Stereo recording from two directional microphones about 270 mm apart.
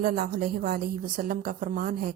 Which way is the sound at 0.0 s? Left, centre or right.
Right.